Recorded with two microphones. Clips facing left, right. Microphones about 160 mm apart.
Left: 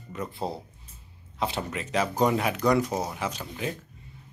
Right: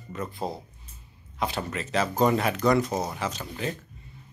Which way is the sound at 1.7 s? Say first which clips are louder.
Right 1 dB; 10° left (ahead or behind).